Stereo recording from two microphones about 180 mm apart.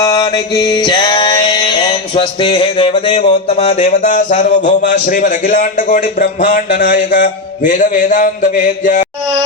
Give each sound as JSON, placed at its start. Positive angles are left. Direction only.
{"t": 0.0, "sound": "mantra", "side_deg": 20}